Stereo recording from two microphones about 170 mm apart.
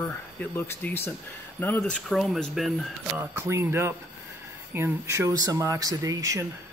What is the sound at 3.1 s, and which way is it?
Speech, 15° right (ahead or behind).